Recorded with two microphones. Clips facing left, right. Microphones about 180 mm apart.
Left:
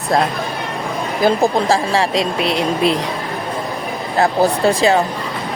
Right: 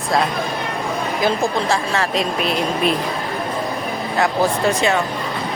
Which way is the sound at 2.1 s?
90° left.